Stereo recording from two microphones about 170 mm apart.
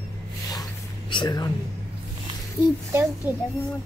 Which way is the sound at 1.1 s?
25° left (ahead or behind).